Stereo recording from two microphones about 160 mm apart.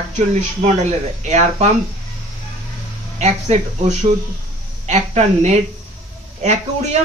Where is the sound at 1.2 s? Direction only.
45° right (ahead or behind).